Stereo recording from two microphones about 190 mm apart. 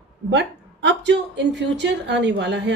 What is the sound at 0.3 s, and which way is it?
A woman's voice, 65° right (ahead or behind).